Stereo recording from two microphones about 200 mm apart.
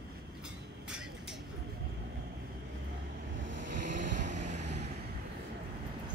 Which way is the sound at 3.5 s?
65° right (ahead or behind).